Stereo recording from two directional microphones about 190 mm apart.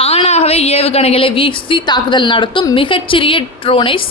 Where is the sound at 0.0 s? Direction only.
30° left (ahead or behind).